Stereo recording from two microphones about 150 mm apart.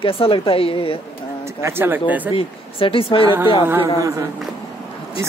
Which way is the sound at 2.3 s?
35° left (ahead or behind).